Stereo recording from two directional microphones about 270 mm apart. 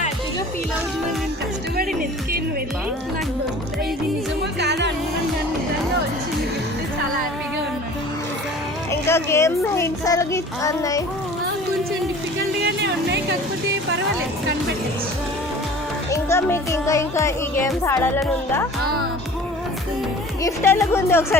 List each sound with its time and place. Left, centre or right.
4.6 s music: right
8.9 s speech: centre
12.6 s music: right
16.0 s speech: centre
20.4 s speech: centre